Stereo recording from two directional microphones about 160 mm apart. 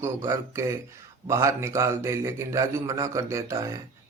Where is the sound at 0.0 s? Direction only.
15° right (ahead or behind).